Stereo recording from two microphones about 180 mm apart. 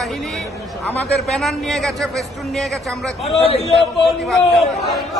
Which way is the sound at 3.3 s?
35° left (ahead or behind).